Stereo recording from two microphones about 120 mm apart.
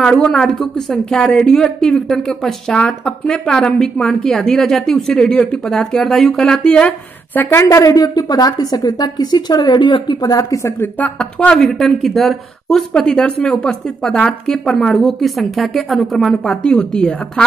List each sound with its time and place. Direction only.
0.0 s speech: 5° left (ahead or behind)
7.3 s a woman's voice: 20° left (ahead or behind)
11.0 s speech: 10° left (ahead or behind)